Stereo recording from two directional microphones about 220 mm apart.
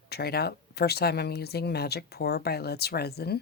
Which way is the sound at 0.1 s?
45° left (ahead or behind).